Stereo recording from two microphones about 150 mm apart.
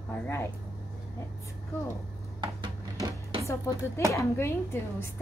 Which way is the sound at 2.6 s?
30° right (ahead or behind).